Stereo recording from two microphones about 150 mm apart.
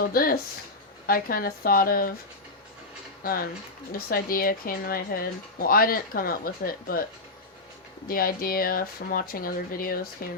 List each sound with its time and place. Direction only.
0.0 s a sound: 75° left (ahead or behind)
1.0 s speech: 75° left (ahead or behind)
3.9 s speech: 80° left
8.0 s speech: 75° left (ahead or behind)